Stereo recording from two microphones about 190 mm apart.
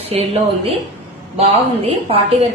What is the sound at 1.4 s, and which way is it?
Speech, 30° right (ahead or behind).